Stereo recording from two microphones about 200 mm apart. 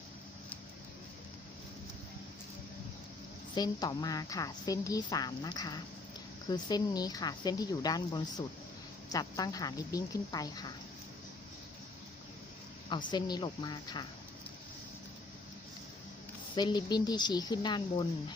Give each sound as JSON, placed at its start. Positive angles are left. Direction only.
{"t": 3.5, "sound": "a woman's voice", "side_deg": 20}
{"t": 13.1, "sound": "a woman's voice", "side_deg": 20}
{"t": 16.6, "sound": "a woman's voice", "side_deg": 20}